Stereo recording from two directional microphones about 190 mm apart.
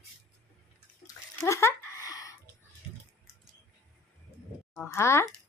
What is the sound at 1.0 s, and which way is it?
Bathtub, 15° left (ahead or behind).